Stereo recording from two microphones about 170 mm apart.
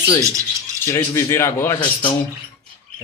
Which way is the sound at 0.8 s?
15° left (ahead or behind).